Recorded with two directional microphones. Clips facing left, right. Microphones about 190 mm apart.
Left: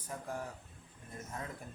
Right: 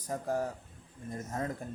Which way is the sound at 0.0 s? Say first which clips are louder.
Right 8 dB; 40° right (ahead or behind).